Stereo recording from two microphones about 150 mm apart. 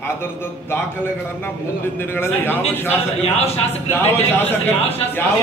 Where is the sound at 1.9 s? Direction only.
15° left (ahead or behind).